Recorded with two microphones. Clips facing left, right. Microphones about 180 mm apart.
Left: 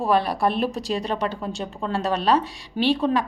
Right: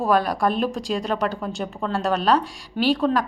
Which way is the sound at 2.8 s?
15° left (ahead or behind).